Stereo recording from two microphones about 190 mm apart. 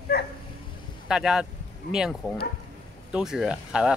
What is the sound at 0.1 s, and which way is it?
Dog, 55° left (ahead or behind).